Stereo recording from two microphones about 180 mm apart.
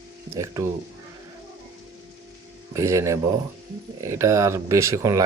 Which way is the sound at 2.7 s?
15° right (ahead or behind).